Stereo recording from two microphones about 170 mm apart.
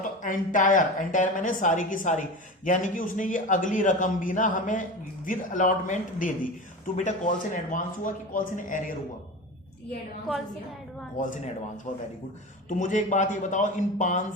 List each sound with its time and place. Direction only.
0.0 s a man's voice: 50° left (ahead or behind)
11.2 s a man's voice: 50° left (ahead or behind)
12.6 s a man's voice: 45° left (ahead or behind)